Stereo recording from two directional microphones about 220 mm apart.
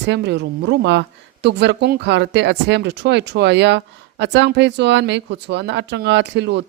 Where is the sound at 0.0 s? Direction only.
50° right (ahead or behind).